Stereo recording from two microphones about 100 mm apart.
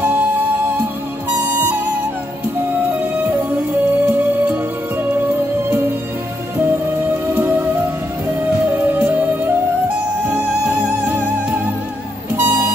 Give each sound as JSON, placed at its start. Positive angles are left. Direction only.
{"t": 0.0, "sound": "music", "side_deg": -15}
{"t": 4.0, "sound": "music", "side_deg": -20}
{"t": 7.3, "sound": "music", "side_deg": -20}
{"t": 12.4, "sound": "vehicle", "side_deg": -25}